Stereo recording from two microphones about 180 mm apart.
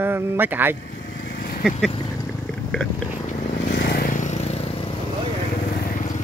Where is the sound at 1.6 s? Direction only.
Centre (ahead or behind).